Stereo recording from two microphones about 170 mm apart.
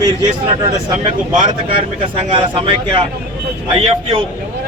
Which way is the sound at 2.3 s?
30° right (ahead or behind).